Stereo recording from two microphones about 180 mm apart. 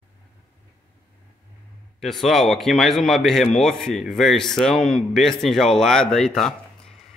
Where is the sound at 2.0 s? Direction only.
Centre (ahead or behind).